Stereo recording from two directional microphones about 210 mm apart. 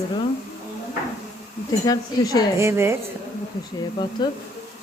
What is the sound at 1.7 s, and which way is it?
Speech, 15° left (ahead or behind).